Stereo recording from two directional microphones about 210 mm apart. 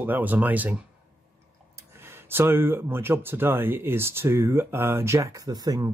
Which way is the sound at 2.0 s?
10° right (ahead or behind).